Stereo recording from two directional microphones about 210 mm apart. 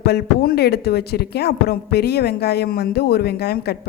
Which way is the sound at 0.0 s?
50° left (ahead or behind).